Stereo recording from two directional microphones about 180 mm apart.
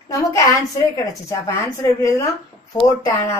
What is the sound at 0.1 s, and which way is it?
A woman's voice, 20° left (ahead or behind).